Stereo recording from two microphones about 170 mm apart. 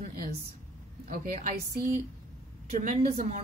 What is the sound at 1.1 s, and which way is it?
Speech, 50° right (ahead or behind).